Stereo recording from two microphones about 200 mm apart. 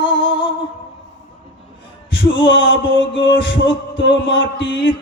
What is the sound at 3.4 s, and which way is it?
Heart murmur, 70° left (ahead or behind).